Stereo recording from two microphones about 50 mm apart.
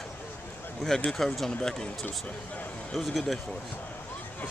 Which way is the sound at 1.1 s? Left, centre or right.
Centre.